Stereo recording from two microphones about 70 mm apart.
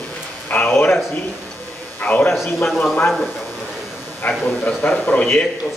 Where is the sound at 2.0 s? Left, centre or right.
Left.